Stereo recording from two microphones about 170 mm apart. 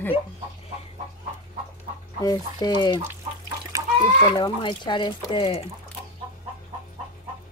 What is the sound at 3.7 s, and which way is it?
Chicken, 20° right (ahead or behind).